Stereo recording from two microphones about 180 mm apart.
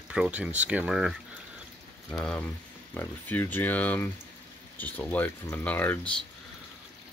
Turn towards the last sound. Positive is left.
turn(degrees=10)  # may be behind; listen again after turning